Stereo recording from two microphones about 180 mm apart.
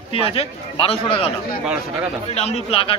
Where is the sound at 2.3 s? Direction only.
35° left (ahead or behind).